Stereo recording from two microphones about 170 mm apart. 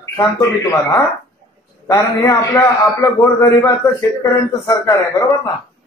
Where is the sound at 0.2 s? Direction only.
20° left (ahead or behind).